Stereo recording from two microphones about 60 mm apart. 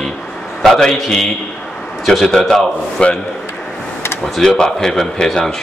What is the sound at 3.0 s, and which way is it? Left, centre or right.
Speech, centre.